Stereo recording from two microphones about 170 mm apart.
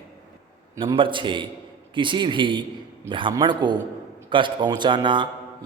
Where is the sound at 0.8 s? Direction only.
30° right (ahead or behind).